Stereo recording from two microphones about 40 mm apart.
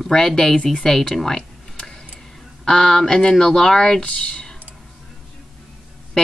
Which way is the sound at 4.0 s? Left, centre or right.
Left.